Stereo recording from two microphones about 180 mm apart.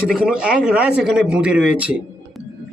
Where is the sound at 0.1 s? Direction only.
5° right (ahead or behind).